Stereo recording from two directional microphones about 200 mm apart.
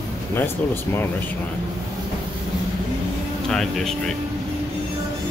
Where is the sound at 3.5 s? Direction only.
Centre (ahead or behind).